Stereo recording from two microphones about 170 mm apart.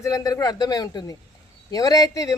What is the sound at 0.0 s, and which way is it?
A woman's voice, 20° left (ahead or behind).